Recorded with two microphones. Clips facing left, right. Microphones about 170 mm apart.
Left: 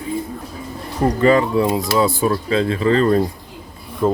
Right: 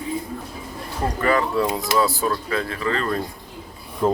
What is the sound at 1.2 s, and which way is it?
Speech, 20° left (ahead or behind).